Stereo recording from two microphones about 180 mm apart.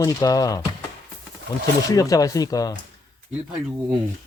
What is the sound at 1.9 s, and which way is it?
Speech, 20° left (ahead or behind).